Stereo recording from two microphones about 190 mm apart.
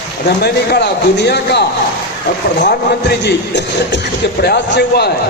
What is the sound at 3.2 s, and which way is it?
Speech, 65° left (ahead or behind).